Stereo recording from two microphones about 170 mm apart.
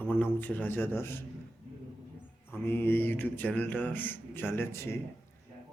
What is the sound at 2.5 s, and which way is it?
A man's voice, 15° left (ahead or behind).